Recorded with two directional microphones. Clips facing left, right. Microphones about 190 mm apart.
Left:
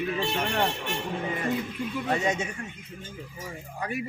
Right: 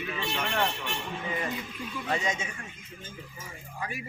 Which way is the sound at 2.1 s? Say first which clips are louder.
Left 3 dB; 50° left (ahead or behind).